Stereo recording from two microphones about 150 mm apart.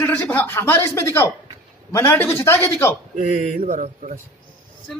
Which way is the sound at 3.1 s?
50° right (ahead or behind).